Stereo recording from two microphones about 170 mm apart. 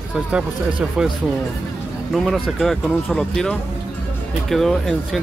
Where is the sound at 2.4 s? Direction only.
Centre (ahead or behind).